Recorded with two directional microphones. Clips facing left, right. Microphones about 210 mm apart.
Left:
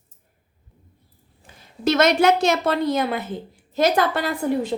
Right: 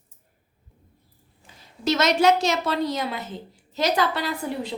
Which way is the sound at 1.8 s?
55° left (ahead or behind).